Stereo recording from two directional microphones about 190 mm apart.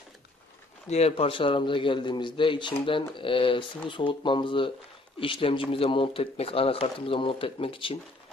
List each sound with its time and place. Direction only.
0.8 s speech: 35° left (ahead or behind)